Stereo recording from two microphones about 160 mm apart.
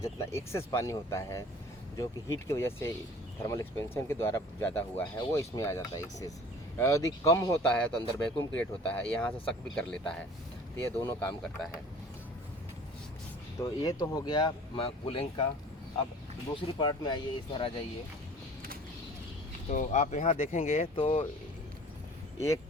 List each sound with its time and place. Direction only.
0.0 s speech: 15° left (ahead or behind)
8.8 s speech: 10° left (ahead or behind)
10.8 s speech: 15° left (ahead or behind)
13.6 s speech: 20° left (ahead or behind)
16.6 s speech: 30° left (ahead or behind)
19.7 s speech: 45° left (ahead or behind)